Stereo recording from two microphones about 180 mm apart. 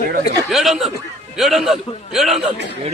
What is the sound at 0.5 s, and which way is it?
A man's voice, centre (ahead or behind).